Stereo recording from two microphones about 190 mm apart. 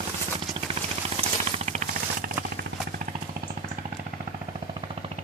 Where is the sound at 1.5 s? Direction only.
35° right (ahead or behind).